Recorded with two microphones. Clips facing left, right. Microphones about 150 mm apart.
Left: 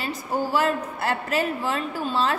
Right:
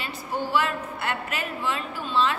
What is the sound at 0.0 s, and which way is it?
A man's voice, 40° left (ahead or behind).